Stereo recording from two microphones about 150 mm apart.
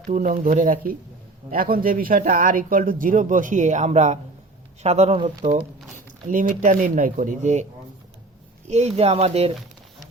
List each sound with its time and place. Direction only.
0.1 s speech: 60° right (ahead or behind); by 5.3 s 40° right (ahead or behind)
6.2 s speech: 60° right (ahead or behind)
8.7 s speech: 45° right (ahead or behind)